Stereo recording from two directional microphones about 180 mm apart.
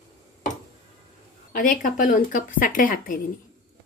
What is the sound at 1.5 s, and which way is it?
Speech, 50° left (ahead or behind).